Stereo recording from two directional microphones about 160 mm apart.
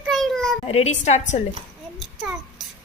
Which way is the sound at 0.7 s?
40° left (ahead or behind).